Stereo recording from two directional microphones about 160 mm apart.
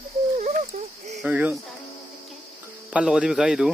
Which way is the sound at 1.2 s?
10° right (ahead or behind).